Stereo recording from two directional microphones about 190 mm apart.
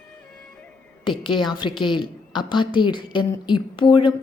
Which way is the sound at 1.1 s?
25° left (ahead or behind).